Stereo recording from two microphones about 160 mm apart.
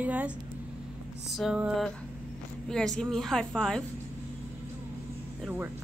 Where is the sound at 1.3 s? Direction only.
5° right (ahead or behind).